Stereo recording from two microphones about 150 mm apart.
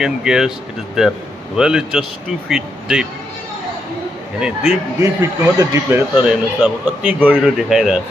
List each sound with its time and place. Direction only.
0.0 s speech: 5° right (ahead or behind)
5.0 s speech: 20° right (ahead or behind)
6.1 s speech: 5° right (ahead or behind)